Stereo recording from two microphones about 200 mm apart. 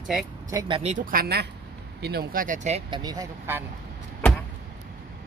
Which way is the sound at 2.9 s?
20° right (ahead or behind).